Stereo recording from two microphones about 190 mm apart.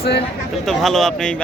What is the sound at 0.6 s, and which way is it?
Speech, centre (ahead or behind).